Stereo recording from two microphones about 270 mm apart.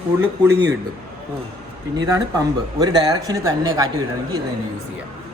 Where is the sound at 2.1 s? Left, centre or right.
Centre.